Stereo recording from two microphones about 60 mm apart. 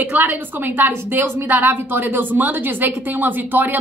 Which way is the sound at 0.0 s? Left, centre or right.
Right.